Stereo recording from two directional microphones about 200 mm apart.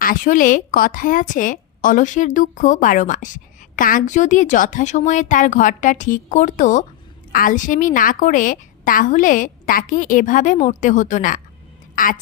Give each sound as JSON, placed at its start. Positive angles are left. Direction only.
{"t": 0.0, "sound": "a woman's voice", "side_deg": 45}